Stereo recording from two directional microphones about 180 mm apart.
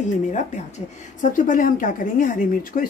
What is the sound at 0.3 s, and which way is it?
A woman's voice, 40° left (ahead or behind).